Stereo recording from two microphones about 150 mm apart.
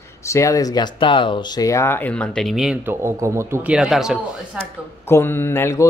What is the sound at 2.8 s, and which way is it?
Speech, 15° right (ahead or behind).